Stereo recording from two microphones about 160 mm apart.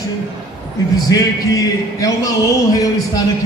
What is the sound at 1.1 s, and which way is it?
Speech, 20° left (ahead or behind).